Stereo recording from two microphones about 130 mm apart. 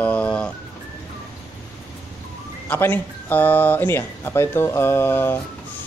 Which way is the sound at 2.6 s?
15° left (ahead or behind).